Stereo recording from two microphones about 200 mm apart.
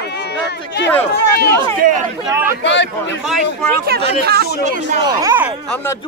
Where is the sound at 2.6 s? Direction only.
65° left (ahead or behind).